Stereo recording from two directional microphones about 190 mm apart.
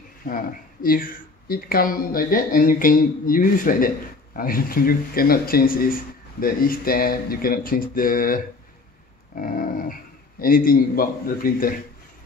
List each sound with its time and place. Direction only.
0.3 s speech: 50° left (ahead or behind)